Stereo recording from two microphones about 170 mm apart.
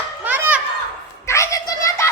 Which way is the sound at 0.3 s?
10° right (ahead or behind).